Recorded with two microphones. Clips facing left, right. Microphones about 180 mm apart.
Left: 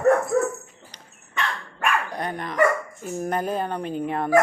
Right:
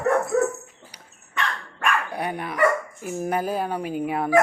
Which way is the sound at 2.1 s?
10° right (ahead or behind).